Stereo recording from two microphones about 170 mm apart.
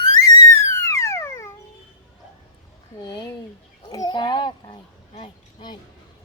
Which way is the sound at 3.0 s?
25° left (ahead or behind).